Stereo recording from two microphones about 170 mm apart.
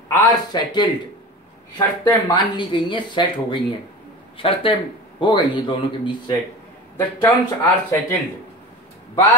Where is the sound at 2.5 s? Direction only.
25° left (ahead or behind).